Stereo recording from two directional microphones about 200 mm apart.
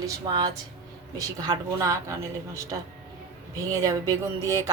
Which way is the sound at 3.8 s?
15° right (ahead or behind).